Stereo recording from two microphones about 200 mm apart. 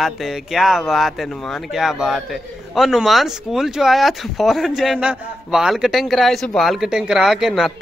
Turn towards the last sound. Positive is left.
turn(degrees=0)  # may be behind; listen again after turning